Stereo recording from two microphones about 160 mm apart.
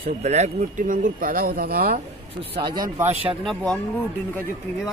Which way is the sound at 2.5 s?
30° right (ahead or behind).